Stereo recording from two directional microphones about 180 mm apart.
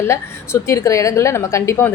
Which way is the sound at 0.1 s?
15° left (ahead or behind).